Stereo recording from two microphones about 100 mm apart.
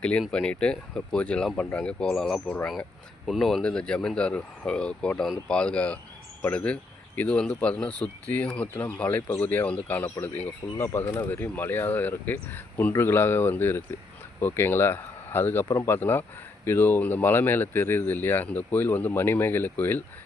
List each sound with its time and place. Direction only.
0.0 s speech: 10° left (ahead or behind)